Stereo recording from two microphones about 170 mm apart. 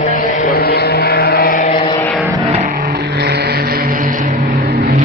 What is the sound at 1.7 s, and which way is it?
Vehicle, 40° left (ahead or behind).